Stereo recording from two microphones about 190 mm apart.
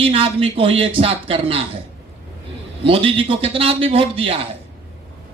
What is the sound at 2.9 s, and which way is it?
A man's voice, 30° right (ahead or behind).